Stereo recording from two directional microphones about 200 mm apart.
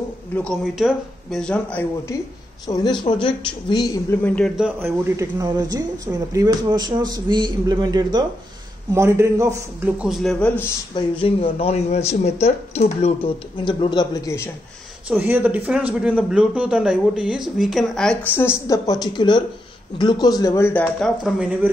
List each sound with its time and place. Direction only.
0.4 s a man's voice: centre (ahead or behind)
2.6 s speech: 20° left (ahead or behind)
4.6 s a man's voice: 10° right (ahead or behind); by 10.7 s 5° left (ahead or behind)
11.0 s speech: 25° left (ahead or behind)
15.0 s a man's voice: 10° right (ahead or behind)